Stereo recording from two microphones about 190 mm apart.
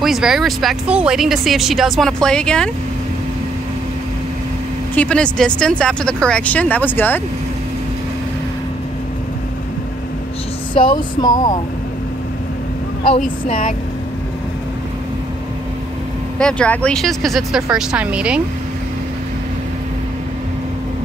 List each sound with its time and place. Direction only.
0.0 s speech: centre (ahead or behind)
4.9 s speech: 5° left (ahead or behind)
10.7 s speech: 25° left (ahead or behind)
13.2 s speech: 45° left (ahead or behind)
16.3 s speech: 5° left (ahead or behind)